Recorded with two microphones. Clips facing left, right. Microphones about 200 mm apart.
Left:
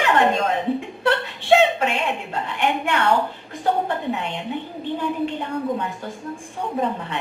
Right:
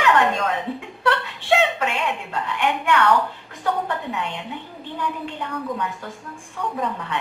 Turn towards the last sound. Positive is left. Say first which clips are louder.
# left 2 dB
turn(degrees=25)  # may be behind; listen again after turning